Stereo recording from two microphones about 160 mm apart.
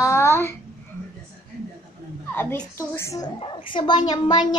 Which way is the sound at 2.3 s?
10° left (ahead or behind).